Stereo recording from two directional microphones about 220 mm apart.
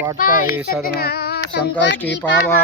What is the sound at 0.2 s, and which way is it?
Speech, 40° left (ahead or behind).